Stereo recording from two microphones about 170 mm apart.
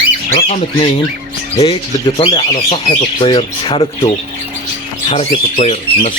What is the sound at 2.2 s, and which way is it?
Speech, 30° left (ahead or behind).